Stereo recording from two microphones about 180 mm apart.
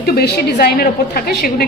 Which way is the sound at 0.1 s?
60° left (ahead or behind).